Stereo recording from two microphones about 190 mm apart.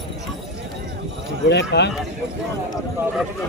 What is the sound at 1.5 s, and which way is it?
Speech, 65° left (ahead or behind).